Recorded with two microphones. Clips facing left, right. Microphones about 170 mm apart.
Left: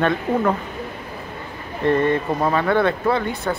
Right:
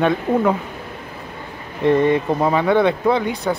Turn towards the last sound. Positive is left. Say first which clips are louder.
# right 3 dB
turn(degrees=-15)  # may be behind; listen again after turning